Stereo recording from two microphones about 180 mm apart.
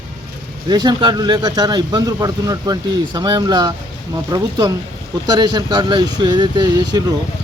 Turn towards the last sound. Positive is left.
turn(degrees=-25)  # may be behind; listen again after turning